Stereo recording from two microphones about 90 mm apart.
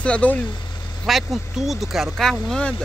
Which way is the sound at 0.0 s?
15° left (ahead or behind).